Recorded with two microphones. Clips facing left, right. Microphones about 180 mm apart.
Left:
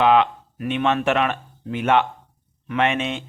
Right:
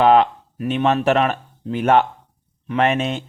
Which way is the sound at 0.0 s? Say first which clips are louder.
Right 3 dB; 40° right (ahead or behind).